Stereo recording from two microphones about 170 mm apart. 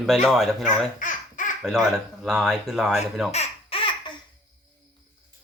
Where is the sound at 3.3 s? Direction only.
35° left (ahead or behind).